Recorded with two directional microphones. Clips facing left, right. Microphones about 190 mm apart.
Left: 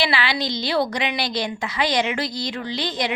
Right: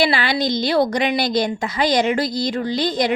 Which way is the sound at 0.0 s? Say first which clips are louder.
Right 5 dB; 45° right (ahead or behind).